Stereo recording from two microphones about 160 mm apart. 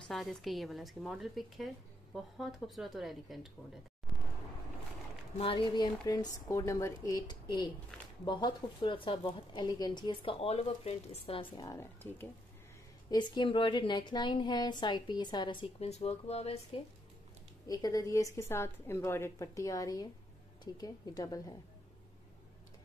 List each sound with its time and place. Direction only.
0.1 s a woman's voice: centre (ahead or behind)
5.4 s a woman's voice: 30° left (ahead or behind); by 12.3 s 15° left (ahead or behind)
13.1 s a woman's voice: 30° left (ahead or behind)
15.8 s speech: 40° left (ahead or behind)
17.6 s a woman's voice: 20° left (ahead or behind)